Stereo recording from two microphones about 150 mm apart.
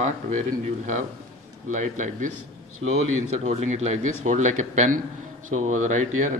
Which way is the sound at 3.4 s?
50° right (ahead or behind).